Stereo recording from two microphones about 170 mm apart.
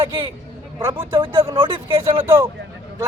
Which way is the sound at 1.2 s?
30° right (ahead or behind).